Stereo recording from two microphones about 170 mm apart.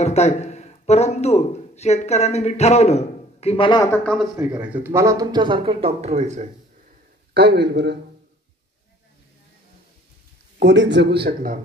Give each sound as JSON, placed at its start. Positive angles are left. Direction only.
{"t": 0.0, "sound": "a man's voice", "side_deg": 40}
{"t": 3.9, "sound": "speech", "side_deg": 5}
{"t": 4.6, "sound": "speech", "side_deg": -10}
{"t": 7.3, "sound": "speech", "side_deg": -80}
{"t": 10.6, "sound": "speech", "side_deg": -90}